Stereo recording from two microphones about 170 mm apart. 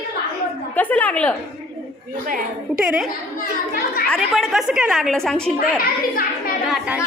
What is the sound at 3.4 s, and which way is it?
Speech, 60° left (ahead or behind).